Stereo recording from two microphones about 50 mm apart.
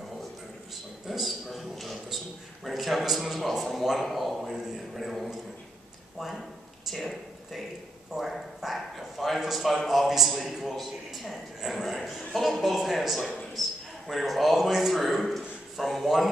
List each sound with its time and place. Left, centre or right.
1.0 s a sound: centre
2.6 s a man's voice: centre
6.9 s a man's voice: centre